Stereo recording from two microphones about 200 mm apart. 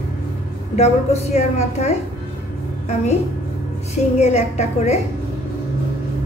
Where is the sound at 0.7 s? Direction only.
35° left (ahead or behind).